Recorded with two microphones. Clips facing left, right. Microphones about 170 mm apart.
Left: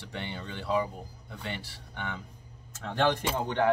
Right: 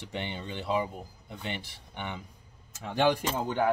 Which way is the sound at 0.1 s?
20° right (ahead or behind).